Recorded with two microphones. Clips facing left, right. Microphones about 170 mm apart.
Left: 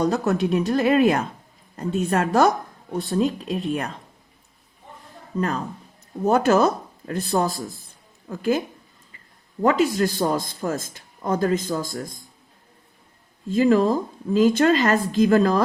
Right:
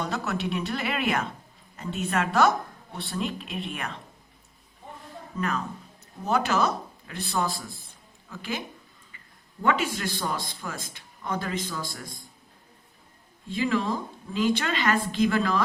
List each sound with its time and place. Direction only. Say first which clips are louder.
0.0 s speech: left 9 dB; 45° left (ahead or behind)
5.4 s speech: left 5 dB; 35° left (ahead or behind)
6.2 s a man's voice: left 7 dB; 45° left (ahead or behind)
13.5 s speech: left 9 dB; 40° left (ahead or behind)